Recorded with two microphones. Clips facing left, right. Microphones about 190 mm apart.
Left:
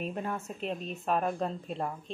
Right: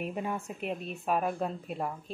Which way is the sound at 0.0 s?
10° right (ahead or behind).